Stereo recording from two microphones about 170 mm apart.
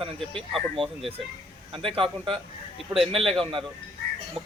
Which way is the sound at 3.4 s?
30° right (ahead or behind).